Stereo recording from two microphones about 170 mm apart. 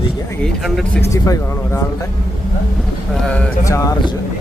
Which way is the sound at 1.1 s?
20° left (ahead or behind).